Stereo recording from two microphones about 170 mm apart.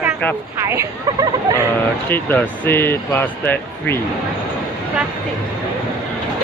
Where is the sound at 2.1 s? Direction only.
10° left (ahead or behind).